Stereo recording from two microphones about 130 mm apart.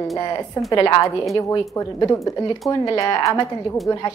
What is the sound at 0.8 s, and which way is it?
A woman's voice, 25° left (ahead or behind).